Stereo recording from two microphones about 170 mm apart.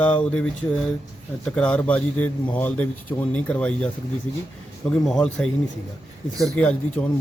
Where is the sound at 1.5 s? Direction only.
5° left (ahead or behind).